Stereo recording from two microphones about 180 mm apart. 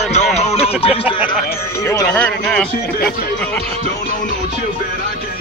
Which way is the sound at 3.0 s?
55° left (ahead or behind).